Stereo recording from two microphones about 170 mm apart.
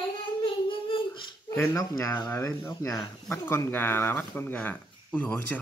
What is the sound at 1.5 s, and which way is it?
Speech, 15° left (ahead or behind).